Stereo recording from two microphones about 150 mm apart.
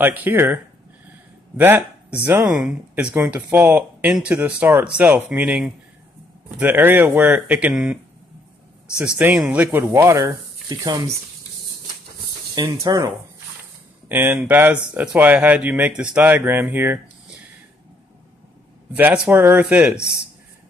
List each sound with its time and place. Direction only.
0.0 s speech: 10° right (ahead or behind)
1.6 s speech: 10° right (ahead or behind)
12.5 s speech: 25° right (ahead or behind)
14.0 s speech: 10° right (ahead or behind)
18.9 s speech: 10° right (ahead or behind)